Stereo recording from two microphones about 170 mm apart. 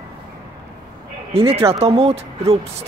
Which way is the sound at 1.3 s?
35° right (ahead or behind).